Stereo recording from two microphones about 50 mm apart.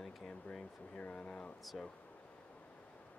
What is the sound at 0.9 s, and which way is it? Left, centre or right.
Speech, left.